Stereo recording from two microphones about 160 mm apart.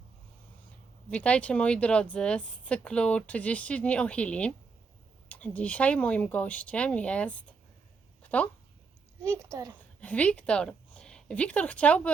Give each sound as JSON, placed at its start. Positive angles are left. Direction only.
{"t": 1.1, "sound": "speech", "side_deg": 10}
{"t": 8.2, "sound": "a sound", "side_deg": 10}
{"t": 9.2, "sound": "a child's voice", "side_deg": -15}
{"t": 10.0, "sound": "a woman's voice", "side_deg": 10}